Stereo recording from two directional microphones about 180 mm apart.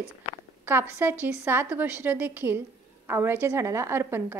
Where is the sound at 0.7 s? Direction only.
10° right (ahead or behind).